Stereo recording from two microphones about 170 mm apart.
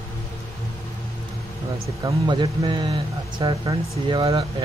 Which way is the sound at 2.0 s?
25° right (ahead or behind).